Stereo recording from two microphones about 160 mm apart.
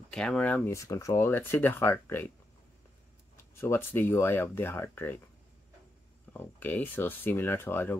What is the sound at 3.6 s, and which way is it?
Speech, 15° left (ahead or behind).